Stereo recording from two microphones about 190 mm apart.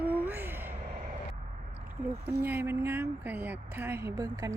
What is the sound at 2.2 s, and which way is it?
Speech, 10° right (ahead or behind).